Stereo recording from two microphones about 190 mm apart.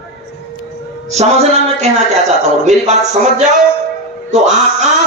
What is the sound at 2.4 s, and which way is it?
Speech, 35° right (ahead or behind).